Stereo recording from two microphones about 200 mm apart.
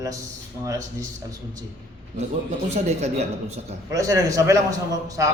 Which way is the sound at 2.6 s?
35° right (ahead or behind).